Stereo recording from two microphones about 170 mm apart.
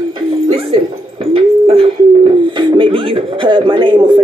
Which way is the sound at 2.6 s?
25° right (ahead or behind).